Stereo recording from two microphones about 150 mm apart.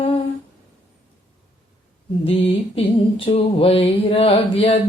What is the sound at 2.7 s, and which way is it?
Mantra, 40° left (ahead or behind).